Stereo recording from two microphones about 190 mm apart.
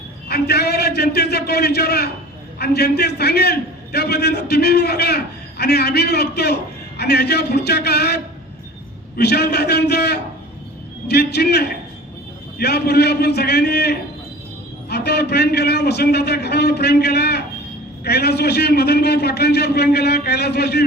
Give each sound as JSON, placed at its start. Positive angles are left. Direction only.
{"t": 0.3, "sound": "a man's voice", "side_deg": 60}